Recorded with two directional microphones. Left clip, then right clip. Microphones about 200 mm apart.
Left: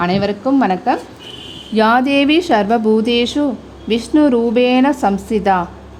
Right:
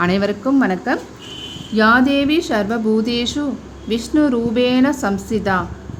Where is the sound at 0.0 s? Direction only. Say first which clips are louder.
Left 1 dB; 10° left (ahead or behind).